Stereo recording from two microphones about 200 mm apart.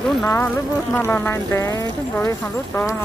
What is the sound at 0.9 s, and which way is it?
Speech, 10° left (ahead or behind).